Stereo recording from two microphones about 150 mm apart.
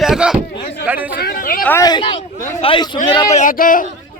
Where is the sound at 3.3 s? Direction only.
65° left (ahead or behind).